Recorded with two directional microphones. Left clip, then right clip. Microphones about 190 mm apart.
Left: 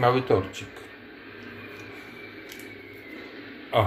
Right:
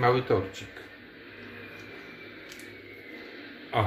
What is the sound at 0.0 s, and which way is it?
Speech, 15° left (ahead or behind).